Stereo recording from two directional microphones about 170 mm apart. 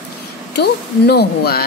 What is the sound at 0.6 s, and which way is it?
Speech, 70° left (ahead or behind).